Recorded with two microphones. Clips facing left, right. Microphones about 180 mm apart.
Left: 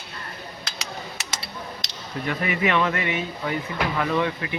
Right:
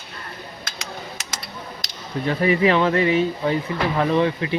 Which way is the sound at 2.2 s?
30° right (ahead or behind).